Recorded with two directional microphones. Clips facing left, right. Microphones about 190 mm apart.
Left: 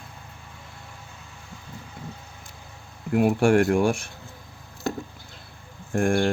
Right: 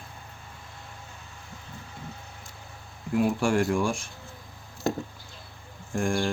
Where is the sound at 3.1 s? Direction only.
60° left (ahead or behind).